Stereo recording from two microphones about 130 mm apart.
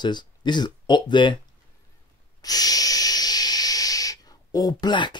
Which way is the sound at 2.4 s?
30° left (ahead or behind).